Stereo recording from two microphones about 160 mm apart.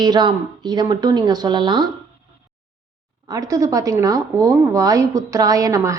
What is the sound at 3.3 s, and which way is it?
Speech, 20° right (ahead or behind).